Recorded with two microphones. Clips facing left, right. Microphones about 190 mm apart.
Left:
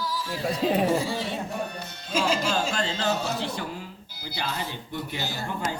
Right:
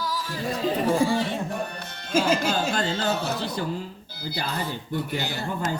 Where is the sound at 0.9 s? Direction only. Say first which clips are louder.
Right 4 dB; 50° right (ahead or behind).